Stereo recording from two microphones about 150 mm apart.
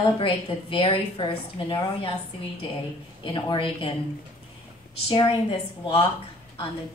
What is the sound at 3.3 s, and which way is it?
Speech, 35° left (ahead or behind).